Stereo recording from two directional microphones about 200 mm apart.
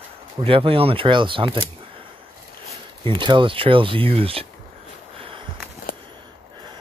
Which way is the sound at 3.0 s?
25° right (ahead or behind).